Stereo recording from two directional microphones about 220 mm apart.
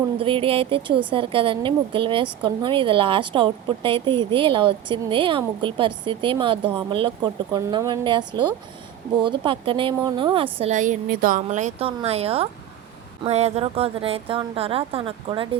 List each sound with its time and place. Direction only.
0.2 s a woman's voice: 25° right (ahead or behind)